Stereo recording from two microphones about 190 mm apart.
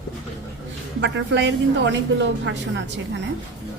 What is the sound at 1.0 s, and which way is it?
Speech, 70° right (ahead or behind).